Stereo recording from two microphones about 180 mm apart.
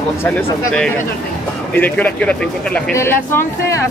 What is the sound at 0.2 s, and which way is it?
Speech, 10° left (ahead or behind).